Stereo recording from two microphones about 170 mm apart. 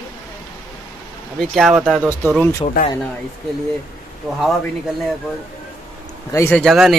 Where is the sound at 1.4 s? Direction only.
Centre (ahead or behind).